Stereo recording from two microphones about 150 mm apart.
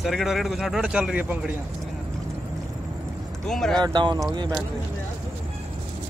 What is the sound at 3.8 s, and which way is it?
Speech, 30° right (ahead or behind).